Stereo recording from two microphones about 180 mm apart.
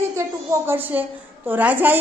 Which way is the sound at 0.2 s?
15° right (ahead or behind).